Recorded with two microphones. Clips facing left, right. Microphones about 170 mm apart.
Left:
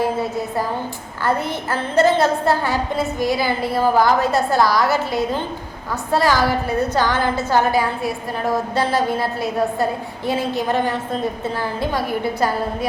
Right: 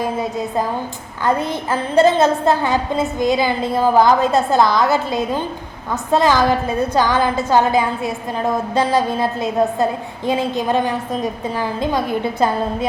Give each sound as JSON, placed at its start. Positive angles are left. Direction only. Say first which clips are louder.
{"t": 0.0, "sound": "a woman's voice", "louder": "even", "side_deg": -20}